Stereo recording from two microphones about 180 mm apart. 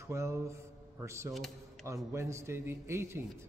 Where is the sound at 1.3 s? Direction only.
Centre (ahead or behind).